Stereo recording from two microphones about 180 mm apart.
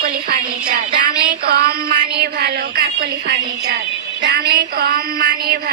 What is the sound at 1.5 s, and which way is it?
Speech, 55° right (ahead or behind).